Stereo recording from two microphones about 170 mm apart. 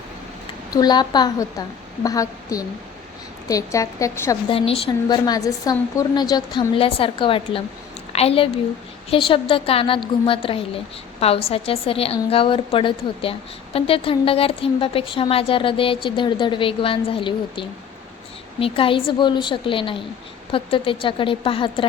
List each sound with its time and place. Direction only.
0.7 s a woman's voice: 25° left (ahead or behind)
4.4 s a woman's voice: 35° left (ahead or behind)